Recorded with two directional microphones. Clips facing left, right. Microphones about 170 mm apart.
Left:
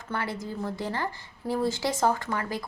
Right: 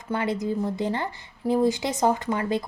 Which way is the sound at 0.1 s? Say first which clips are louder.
Right 7 dB; 20° right (ahead or behind).